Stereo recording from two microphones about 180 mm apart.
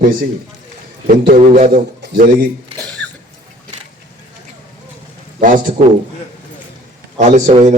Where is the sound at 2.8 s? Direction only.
5° left (ahead or behind).